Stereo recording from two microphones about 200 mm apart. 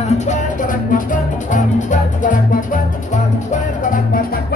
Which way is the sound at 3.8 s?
40° left (ahead or behind).